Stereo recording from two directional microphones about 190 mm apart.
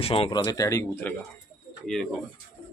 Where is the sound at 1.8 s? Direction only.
Centre (ahead or behind).